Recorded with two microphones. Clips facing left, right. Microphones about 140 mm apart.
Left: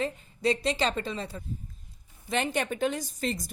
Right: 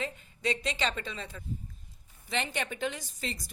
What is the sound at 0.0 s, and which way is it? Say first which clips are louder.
A woman's voice: left 6 dB; 35° left (ahead or behind).